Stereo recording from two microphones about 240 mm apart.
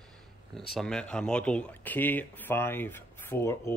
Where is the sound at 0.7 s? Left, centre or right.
Centre.